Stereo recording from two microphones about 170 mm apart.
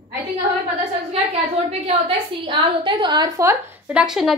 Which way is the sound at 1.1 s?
35° right (ahead or behind).